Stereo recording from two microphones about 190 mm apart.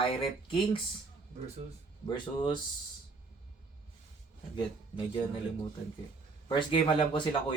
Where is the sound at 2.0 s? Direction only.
25° left (ahead or behind).